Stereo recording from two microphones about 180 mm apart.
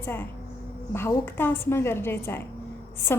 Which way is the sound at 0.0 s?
10° left (ahead or behind).